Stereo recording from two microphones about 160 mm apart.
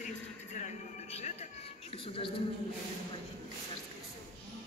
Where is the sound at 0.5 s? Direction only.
45° left (ahead or behind).